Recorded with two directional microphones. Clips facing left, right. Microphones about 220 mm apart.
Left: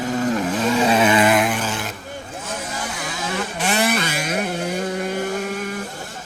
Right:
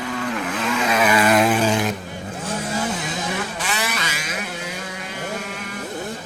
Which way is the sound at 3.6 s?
50° left (ahead or behind).